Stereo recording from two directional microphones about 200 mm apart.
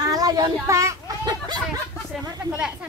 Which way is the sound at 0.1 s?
20° right (ahead or behind).